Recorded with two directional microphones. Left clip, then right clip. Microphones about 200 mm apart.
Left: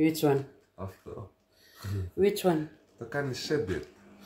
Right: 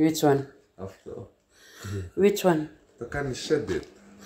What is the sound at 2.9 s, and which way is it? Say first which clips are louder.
Speech: right 2 dB; 20° left (ahead or behind).